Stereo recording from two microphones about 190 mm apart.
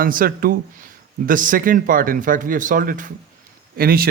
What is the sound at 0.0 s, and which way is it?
A man's voice, 50° right (ahead or behind).